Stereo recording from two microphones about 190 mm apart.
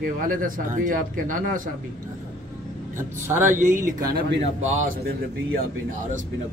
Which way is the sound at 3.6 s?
40° right (ahead or behind).